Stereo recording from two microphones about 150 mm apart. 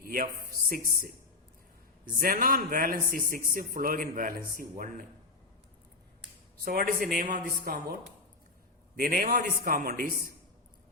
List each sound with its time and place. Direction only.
0.0 s a sound: 75° right (ahead or behind)
2.0 s a man's voice: 75° right (ahead or behind)
6.7 s a man's voice: 70° right (ahead or behind)
9.0 s a man's voice: 70° right (ahead or behind)